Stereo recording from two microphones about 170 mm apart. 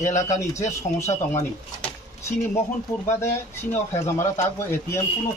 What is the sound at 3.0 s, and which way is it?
A man's voice, 15° left (ahead or behind).